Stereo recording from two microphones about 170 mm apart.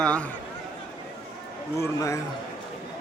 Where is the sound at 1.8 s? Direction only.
20° left (ahead or behind).